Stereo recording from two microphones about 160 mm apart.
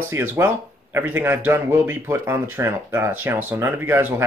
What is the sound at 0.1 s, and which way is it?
Speech, 15° right (ahead or behind).